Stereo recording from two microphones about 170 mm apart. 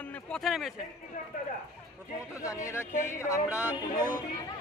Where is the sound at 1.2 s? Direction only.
50° left (ahead or behind).